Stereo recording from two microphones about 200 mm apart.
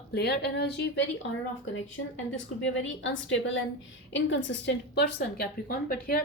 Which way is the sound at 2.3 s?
70° left (ahead or behind).